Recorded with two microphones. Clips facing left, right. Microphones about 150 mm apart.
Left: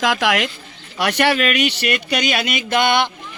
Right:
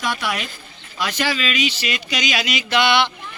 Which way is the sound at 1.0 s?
70° left (ahead or behind).